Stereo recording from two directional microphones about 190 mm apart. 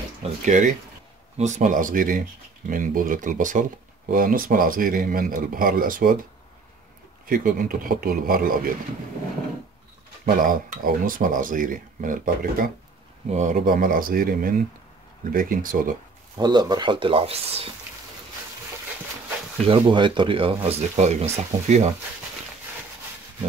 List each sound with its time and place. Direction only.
0.5 s speech: 40° right (ahead or behind)
7.2 s speech: 50° right (ahead or behind)
10.2 s speech: 45° right (ahead or behind)
16.3 s speech: 20° right (ahead or behind)
19.6 s speech: 25° right (ahead or behind)